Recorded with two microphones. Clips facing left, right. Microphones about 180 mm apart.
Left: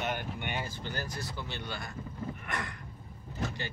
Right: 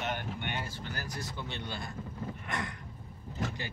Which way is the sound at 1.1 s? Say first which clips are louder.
Even; 20° right (ahead or behind).